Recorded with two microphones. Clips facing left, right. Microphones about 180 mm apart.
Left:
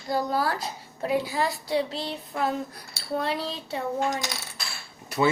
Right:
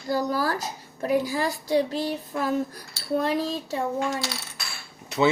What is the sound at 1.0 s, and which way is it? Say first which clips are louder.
A woman's voice: right 2 dB; 45° right (ahead or behind).